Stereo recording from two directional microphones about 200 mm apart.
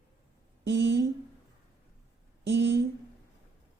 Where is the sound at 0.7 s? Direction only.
65° right (ahead or behind).